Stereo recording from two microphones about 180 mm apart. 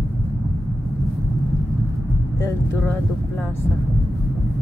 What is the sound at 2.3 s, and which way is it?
Speech, 20° left (ahead or behind).